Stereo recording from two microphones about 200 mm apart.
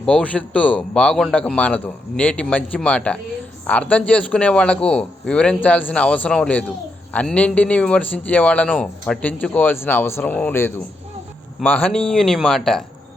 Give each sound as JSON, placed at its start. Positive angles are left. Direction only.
{"t": 0.0, "sound": "a man's voice", "side_deg": 5}